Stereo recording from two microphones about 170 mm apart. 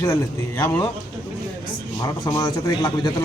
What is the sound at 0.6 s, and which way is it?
Speech, 15° left (ahead or behind).